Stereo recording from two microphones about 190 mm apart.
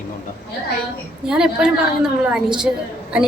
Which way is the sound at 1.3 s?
5° right (ahead or behind).